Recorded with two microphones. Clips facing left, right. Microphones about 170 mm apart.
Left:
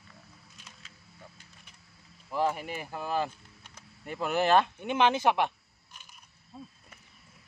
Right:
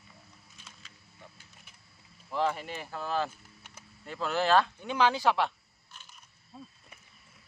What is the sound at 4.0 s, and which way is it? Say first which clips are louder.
Speech: left 2 dB; 15° left (ahead or behind).